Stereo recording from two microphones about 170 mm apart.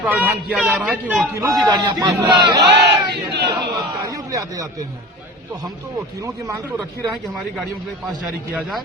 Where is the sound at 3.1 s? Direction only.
80° right.